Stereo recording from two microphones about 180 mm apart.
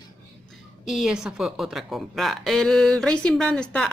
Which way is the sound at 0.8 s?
Centre (ahead or behind).